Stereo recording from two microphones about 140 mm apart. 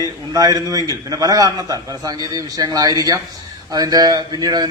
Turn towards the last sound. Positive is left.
turn(degrees=-30)  # may be behind; listen again after turning